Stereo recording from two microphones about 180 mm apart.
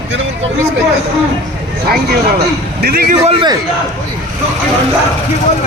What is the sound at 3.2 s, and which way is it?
Speech, 25° right (ahead or behind).